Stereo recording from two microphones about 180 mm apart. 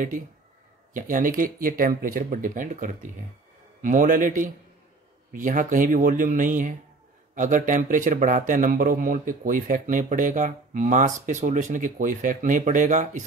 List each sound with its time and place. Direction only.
0.9 s a man's voice: 50° right (ahead or behind)